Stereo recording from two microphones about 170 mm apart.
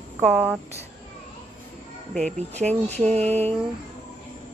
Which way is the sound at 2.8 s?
10° left (ahead or behind).